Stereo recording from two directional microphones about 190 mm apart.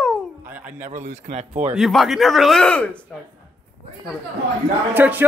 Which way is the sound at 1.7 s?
Centre (ahead or behind).